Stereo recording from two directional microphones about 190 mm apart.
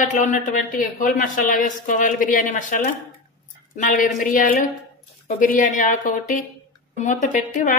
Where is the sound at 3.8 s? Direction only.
45° left (ahead or behind).